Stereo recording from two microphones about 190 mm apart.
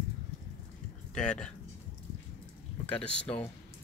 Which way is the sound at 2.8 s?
5° left (ahead or behind).